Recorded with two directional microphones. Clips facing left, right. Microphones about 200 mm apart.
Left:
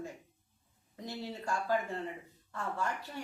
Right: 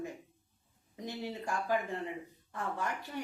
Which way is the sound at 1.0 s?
15° right (ahead or behind).